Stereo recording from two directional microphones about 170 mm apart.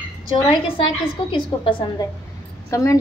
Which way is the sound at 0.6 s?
30° left (ahead or behind).